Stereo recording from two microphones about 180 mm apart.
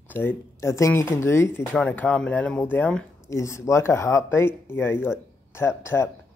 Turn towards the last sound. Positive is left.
turn(degrees=15)  # may be behind; listen again after turning